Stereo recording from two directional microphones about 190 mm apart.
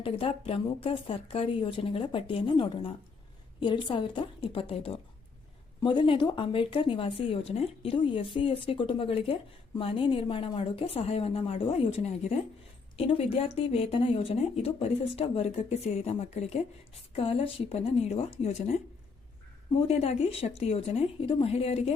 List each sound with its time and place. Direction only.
0.0 s speech: 30° left (ahead or behind)
19.9 s speech: 35° left (ahead or behind)